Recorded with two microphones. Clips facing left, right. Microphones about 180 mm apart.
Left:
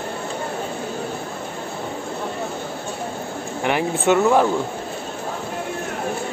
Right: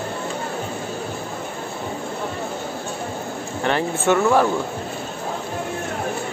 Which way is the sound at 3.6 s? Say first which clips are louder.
Left 1 dB; 15° left (ahead or behind).